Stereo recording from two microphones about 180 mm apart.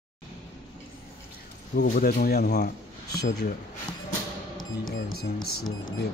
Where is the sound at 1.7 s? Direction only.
55° left (ahead or behind).